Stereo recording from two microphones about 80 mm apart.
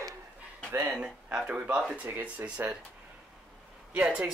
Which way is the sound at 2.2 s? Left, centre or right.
Centre.